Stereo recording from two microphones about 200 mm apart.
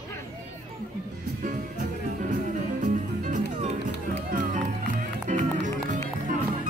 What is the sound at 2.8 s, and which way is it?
Music, 40° right (ahead or behind).